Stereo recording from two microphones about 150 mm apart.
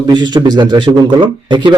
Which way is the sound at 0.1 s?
30° right (ahead or behind).